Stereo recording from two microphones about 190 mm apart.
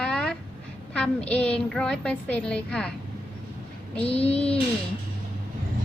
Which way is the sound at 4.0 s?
30° left (ahead or behind).